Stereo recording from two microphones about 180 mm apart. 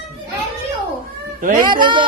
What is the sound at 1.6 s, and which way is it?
Speech, 25° right (ahead or behind).